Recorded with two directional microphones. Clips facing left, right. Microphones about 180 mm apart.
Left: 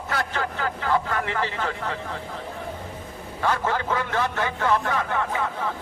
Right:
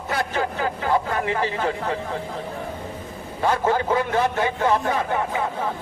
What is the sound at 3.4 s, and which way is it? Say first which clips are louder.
A man's voice: right 4 dB; 20° right (ahead or behind).